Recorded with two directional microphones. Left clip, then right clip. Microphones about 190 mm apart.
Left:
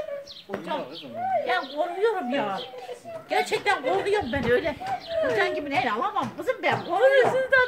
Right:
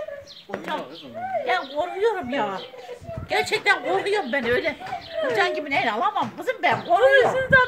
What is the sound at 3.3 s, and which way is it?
A woman's voice, 40° right (ahead or behind).